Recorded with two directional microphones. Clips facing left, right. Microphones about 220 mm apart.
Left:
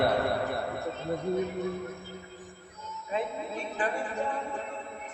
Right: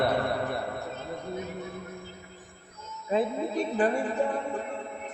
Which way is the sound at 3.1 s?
35° right (ahead or behind).